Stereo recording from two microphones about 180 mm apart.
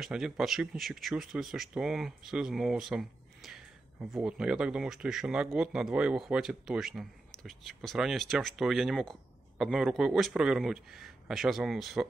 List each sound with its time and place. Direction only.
0.0 s speech: 5° right (ahead or behind)